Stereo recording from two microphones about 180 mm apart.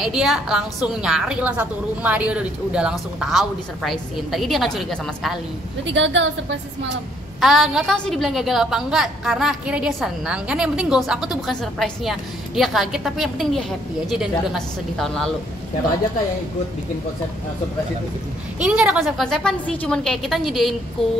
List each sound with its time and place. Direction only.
0.0 s a woman's voice: centre (ahead or behind)
5.9 s a woman's voice: 90° right
7.3 s a woman's voice: centre (ahead or behind)
18.6 s a woman's voice: 5° right (ahead or behind)